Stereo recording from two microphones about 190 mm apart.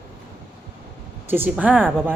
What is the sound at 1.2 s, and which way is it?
Speech, 10° right (ahead or behind).